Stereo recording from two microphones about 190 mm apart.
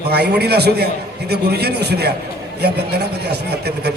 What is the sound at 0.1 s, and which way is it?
A man's voice, 60° right (ahead or behind).